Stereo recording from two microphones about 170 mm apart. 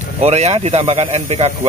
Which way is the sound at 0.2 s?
40° right (ahead or behind).